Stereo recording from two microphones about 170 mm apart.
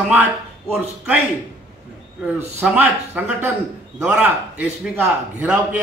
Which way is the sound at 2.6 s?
5° right (ahead or behind).